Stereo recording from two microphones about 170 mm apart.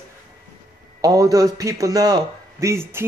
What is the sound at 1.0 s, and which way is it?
Speech, 20° right (ahead or behind).